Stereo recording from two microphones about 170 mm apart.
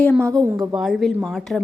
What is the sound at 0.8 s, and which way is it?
Speech, centre (ahead or behind).